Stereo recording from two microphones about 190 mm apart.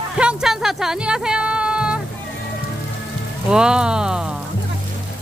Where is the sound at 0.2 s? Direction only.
5° right (ahead or behind).